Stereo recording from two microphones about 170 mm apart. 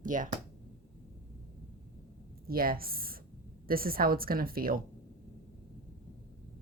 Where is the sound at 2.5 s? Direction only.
60° right (ahead or behind).